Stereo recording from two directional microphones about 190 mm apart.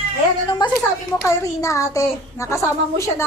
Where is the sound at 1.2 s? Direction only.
15° left (ahead or behind).